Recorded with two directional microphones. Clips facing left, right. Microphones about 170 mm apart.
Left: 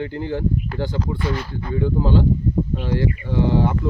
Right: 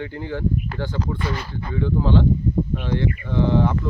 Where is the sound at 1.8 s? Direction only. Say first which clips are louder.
Even; 10° left (ahead or behind).